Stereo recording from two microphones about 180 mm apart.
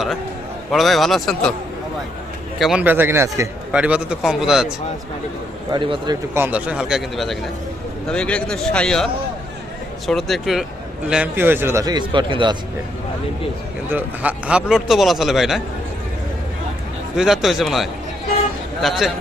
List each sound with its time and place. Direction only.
0.7 s a man's voice: centre (ahead or behind)
2.6 s a man's voice: centre (ahead or behind)
2.8 s a man's voice: 10° right (ahead or behind)
5.7 s a man's voice: 25° right (ahead or behind)
6.3 s a man's voice: 10° right (ahead or behind)
10.1 s a man's voice: centre (ahead or behind); by 12.5 s 25° right (ahead or behind)
13.9 s a man's voice: 10° right (ahead or behind)
17.2 s a man's voice: centre (ahead or behind)